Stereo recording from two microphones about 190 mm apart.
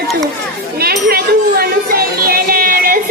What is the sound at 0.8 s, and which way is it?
Music, 55° right (ahead or behind).